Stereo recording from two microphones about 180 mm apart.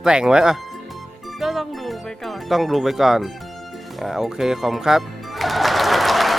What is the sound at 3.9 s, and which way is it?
Speech, centre (ahead or behind).